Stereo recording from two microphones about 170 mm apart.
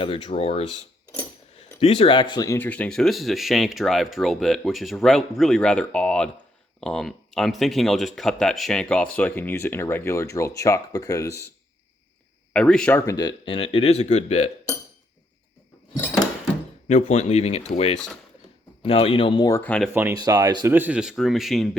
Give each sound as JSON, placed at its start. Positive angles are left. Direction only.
{"t": 0.0, "sound": "speech", "side_deg": 30}
{"t": 1.8, "sound": "speech", "side_deg": 35}
{"t": 2.6, "sound": "speech", "side_deg": 10}
{"t": 12.5, "sound": "speech", "side_deg": 5}
{"t": 13.1, "sound": "speech", "side_deg": 25}
{"t": 16.9, "sound": "speech", "side_deg": 40}
{"t": 19.5, "sound": "speech", "side_deg": 15}
{"t": 19.9, "sound": "speech", "side_deg": -10}
{"t": 20.7, "sound": "speech", "side_deg": -10}